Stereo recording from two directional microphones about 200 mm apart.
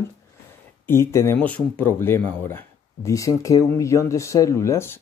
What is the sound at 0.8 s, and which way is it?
Speech, 10° left (ahead or behind).